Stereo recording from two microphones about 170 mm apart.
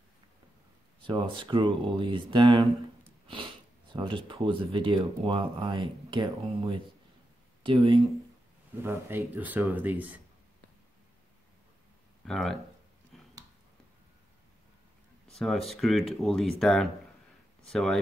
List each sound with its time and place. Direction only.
1.0 s speech: 30° right (ahead or behind)
8.8 s speech: 10° right (ahead or behind)
12.3 s speech: centre (ahead or behind)
13.1 s a sound: centre (ahead or behind)
15.3 s speech: centre (ahead or behind)